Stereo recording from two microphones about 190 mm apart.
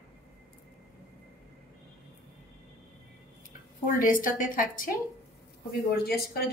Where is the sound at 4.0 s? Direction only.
45° left (ahead or behind).